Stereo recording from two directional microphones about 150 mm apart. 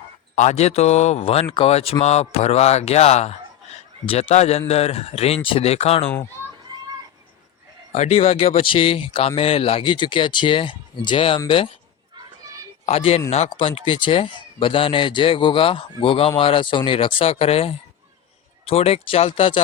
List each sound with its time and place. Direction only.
0.3 s speech: 50° left (ahead or behind)
7.9 s speech: 50° left (ahead or behind)
12.8 s speech: 40° left (ahead or behind)